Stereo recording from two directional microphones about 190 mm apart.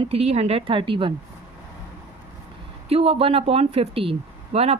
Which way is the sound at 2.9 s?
30° right (ahead or behind).